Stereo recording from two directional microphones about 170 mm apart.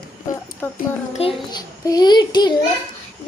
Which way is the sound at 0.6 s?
10° left (ahead or behind).